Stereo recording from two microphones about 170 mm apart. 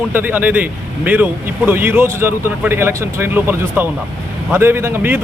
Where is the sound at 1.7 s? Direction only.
10° right (ahead or behind).